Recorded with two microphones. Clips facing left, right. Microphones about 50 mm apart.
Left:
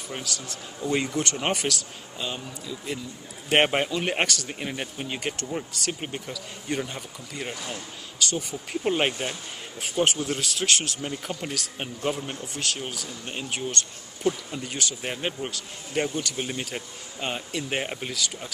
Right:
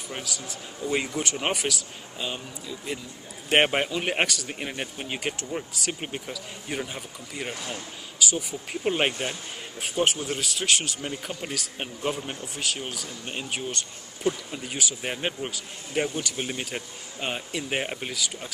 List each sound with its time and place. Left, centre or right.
0.1 s speech: centre